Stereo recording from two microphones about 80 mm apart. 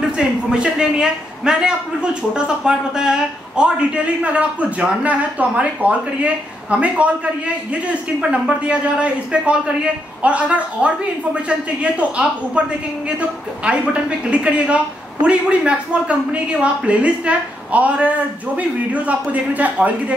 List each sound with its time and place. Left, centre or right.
0.2 s a man's voice: centre
13.7 s a man's voice: centre